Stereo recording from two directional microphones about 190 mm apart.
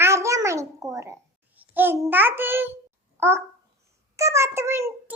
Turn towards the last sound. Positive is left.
turn(degrees=-15)  # may be behind; listen again after turning